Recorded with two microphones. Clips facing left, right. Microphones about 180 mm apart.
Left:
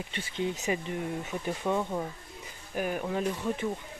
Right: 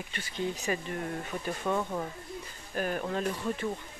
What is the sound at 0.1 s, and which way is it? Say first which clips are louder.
Speech: left 1 dB; 25° left (ahead or behind).